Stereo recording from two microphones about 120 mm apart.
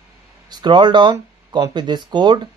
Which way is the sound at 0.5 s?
35° right (ahead or behind).